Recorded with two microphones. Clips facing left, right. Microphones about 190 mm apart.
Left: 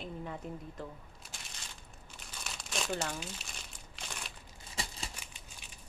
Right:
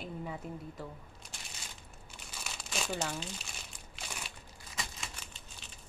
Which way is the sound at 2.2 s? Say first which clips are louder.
Even; centre (ahead or behind).